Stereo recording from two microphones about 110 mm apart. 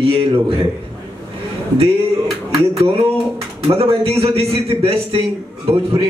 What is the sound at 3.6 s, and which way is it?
A man's voice, 60° right (ahead or behind).